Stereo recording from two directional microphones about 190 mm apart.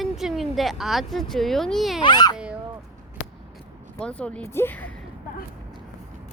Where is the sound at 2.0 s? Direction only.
20° left (ahead or behind).